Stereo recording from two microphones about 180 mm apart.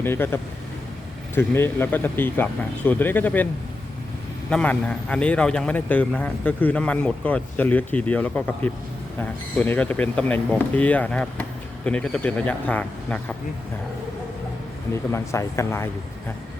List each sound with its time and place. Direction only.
0.0 s a man's voice: 10° left (ahead or behind)
1.4 s a man's voice: 10° left (ahead or behind)
15.1 s a man's voice: 15° left (ahead or behind)